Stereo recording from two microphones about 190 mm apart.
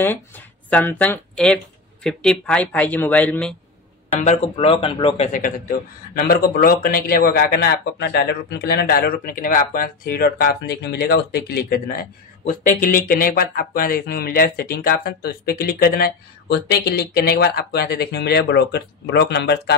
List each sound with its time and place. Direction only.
0.0 s speech: 10° left (ahead or behind)
4.2 s a man's voice: 35° left (ahead or behind); by 19.7 s 60° left (ahead or behind)